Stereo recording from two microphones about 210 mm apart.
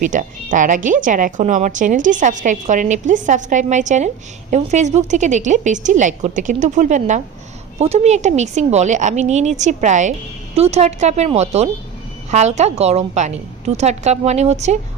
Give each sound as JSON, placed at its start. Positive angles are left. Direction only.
{"t": 0.0, "sound": "a woman's voice", "side_deg": -40}